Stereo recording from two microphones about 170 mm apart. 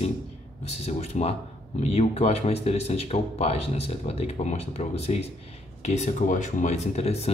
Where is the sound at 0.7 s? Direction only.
40° left (ahead or behind).